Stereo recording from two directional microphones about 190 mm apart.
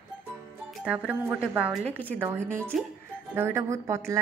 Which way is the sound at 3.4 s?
15° right (ahead or behind).